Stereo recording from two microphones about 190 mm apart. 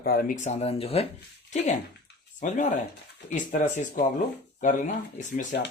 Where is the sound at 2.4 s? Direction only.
40° left (ahead or behind).